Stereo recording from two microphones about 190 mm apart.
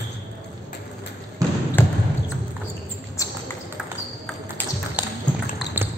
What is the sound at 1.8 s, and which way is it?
Basketball bounce, 10° left (ahead or behind).